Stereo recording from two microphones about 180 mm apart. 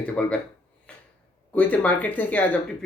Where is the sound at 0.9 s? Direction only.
5° left (ahead or behind).